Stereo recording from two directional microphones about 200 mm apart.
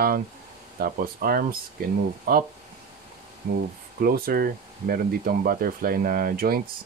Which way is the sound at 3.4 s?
55° right (ahead or behind).